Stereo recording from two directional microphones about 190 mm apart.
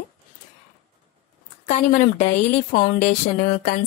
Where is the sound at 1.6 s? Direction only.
40° left (ahead or behind).